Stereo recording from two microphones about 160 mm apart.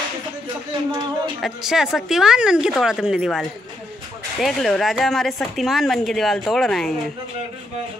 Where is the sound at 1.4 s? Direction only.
5° right (ahead or behind).